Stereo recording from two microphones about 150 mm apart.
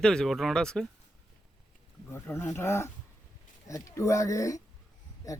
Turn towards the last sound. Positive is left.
turn(degrees=20)  # may be behind; listen again after turning